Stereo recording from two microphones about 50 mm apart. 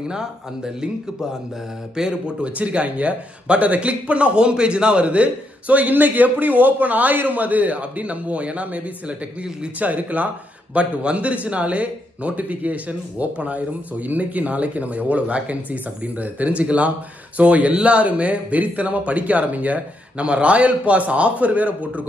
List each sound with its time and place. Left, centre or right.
0.0 s speech: centre
2.0 s a man's voice: centre